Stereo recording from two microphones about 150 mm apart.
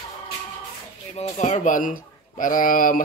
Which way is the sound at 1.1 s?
50° left (ahead or behind).